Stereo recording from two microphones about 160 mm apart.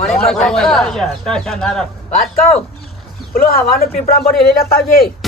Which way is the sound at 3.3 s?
65° left (ahead or behind).